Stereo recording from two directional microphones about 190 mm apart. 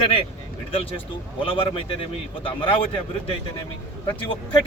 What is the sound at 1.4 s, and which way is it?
Speech, 25° left (ahead or behind).